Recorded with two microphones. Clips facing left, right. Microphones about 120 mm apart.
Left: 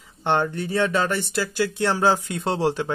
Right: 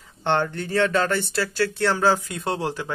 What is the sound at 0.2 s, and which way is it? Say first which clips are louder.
Speech: left 1 dB; 15° left (ahead or behind).